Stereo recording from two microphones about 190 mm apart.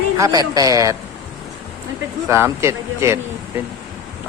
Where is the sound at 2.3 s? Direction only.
15° right (ahead or behind).